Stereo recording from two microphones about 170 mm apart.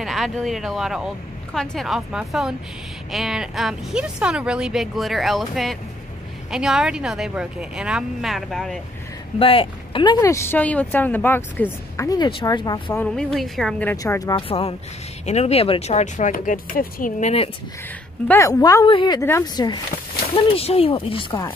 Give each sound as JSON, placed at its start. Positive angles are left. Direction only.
{"t": 0.0, "sound": "speech", "side_deg": 0}
{"t": 9.4, "sound": "speech", "side_deg": 30}
{"t": 10.2, "sound": "a woman's voice", "side_deg": 15}
{"t": 12.0, "sound": "speech", "side_deg": 25}
{"t": 12.9, "sound": "a woman's voice", "side_deg": 5}
{"t": 14.3, "sound": "speech", "side_deg": 35}
{"t": 18.3, "sound": "speech", "side_deg": 20}
{"t": 20.3, "sound": "speech", "side_deg": 35}